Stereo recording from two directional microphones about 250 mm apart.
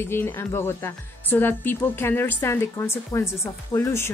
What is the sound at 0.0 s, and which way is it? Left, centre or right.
A woman's voice, centre.